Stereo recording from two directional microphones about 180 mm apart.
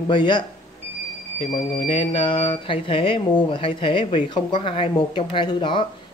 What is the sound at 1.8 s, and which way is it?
Speech, 30° left (ahead or behind).